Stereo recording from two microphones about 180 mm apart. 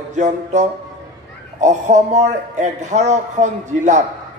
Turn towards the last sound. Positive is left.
turn(degrees=-40)  # may be behind; listen again after turning